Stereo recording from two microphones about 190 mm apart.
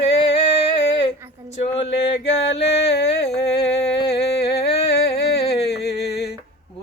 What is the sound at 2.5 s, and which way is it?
Music, 65° left (ahead or behind).